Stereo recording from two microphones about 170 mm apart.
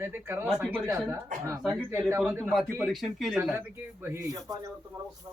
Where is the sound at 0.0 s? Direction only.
15° right (ahead or behind).